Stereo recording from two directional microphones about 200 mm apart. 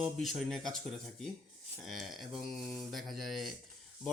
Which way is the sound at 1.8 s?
Centre (ahead or behind).